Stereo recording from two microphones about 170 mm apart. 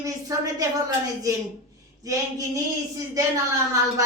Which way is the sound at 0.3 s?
20° right (ahead or behind).